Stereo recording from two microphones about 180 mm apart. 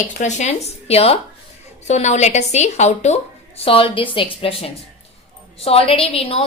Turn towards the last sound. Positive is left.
turn(degrees=35)  # may be behind; listen again after turning